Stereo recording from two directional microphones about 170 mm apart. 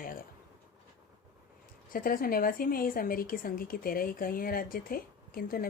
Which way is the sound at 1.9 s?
55° left (ahead or behind).